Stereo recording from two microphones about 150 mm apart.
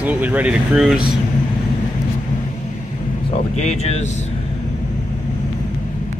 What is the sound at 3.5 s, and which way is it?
Speech, 45° left (ahead or behind).